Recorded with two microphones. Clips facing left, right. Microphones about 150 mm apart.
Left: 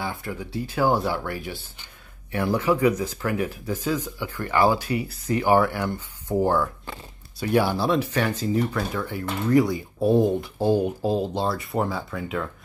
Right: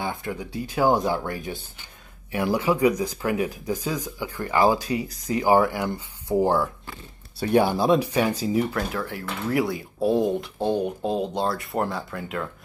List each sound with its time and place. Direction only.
0.0 s speech: 20° right (ahead or behind)
7.3 s speech: 25° right (ahead or behind)
8.7 s speech: centre (ahead or behind)